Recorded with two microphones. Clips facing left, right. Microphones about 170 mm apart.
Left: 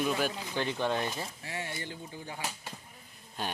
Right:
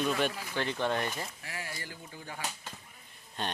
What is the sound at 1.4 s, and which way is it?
Speech, 25° left (ahead or behind).